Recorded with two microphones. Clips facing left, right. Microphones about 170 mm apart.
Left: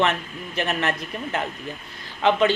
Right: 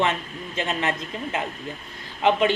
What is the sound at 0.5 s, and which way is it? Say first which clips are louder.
Speech: left 1 dB; 15° right (ahead or behind).